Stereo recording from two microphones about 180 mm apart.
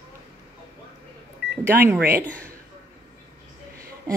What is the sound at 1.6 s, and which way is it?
Speech, 15° right (ahead or behind).